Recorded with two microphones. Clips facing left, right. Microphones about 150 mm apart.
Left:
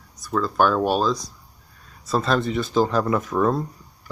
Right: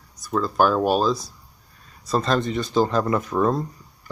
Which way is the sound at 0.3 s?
5° right (ahead or behind).